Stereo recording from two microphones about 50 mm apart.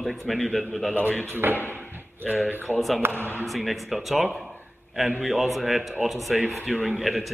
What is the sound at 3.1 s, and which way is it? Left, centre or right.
Speech, left.